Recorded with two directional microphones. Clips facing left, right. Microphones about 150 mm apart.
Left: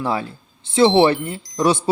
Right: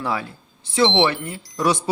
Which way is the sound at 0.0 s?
30° left (ahead or behind).